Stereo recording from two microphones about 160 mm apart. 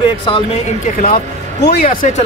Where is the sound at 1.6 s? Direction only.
70° left (ahead or behind).